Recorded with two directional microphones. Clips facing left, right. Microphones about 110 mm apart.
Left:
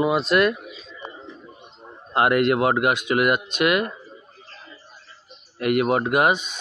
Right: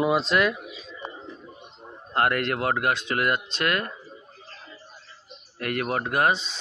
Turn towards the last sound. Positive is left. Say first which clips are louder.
# left 4 dB
turn(degrees=15)  # may be behind; listen again after turning